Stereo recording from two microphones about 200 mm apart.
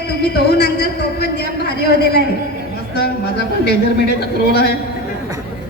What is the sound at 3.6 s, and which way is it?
A man's voice, 55° left (ahead or behind).